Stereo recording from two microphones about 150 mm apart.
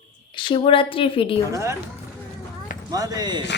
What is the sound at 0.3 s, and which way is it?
A woman's voice, 35° left (ahead or behind).